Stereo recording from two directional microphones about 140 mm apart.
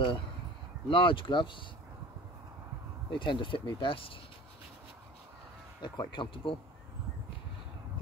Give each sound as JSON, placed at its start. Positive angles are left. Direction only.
{"t": 0.8, "sound": "speech", "side_deg": 35}
{"t": 3.1, "sound": "speech", "side_deg": 35}
{"t": 5.8, "sound": "speech", "side_deg": 30}